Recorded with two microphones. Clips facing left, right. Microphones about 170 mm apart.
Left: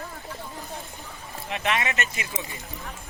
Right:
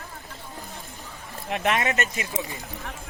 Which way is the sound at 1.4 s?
50° right (ahead or behind).